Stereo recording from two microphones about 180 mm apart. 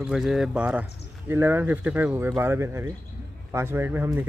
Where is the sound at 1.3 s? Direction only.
10° right (ahead or behind).